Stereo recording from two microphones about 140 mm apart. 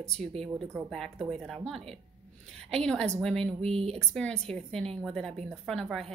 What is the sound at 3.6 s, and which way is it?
Speech, 45° right (ahead or behind).